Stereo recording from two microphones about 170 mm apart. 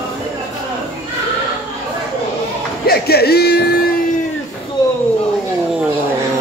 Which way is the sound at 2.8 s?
65° left (ahead or behind).